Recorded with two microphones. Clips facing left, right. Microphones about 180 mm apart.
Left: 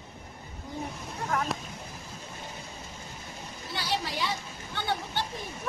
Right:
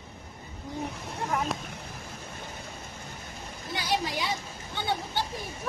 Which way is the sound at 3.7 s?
15° right (ahead or behind).